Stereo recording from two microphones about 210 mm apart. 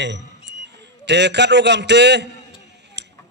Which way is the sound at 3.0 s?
55° right (ahead or behind).